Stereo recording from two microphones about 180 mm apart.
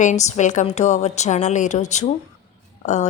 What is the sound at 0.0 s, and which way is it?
Speech, 40° left (ahead or behind).